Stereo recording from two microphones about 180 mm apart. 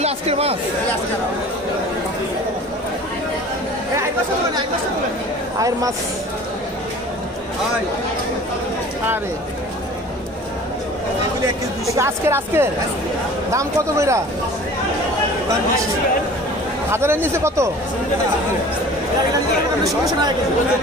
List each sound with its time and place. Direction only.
0.0 s speech: 35° right (ahead or behind)
5.6 s speech: 20° right (ahead or behind)
11.8 s speech: 15° right (ahead or behind)
16.9 s speech: 15° right (ahead or behind)